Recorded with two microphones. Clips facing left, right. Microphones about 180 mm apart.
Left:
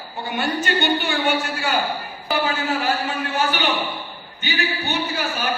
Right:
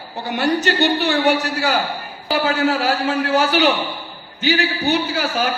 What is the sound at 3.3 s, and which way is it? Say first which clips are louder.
A man's voice: right 6 dB; 90° right.